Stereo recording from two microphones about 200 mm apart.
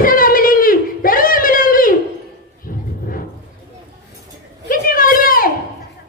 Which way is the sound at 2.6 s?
45° left (ahead or behind).